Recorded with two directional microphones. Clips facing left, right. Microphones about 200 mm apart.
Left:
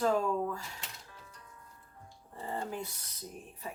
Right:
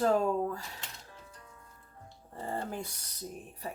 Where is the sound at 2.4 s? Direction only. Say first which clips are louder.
Right 2 dB; 45° right (ahead or behind).